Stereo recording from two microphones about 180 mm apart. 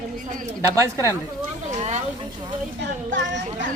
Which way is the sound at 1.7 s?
35° right (ahead or behind).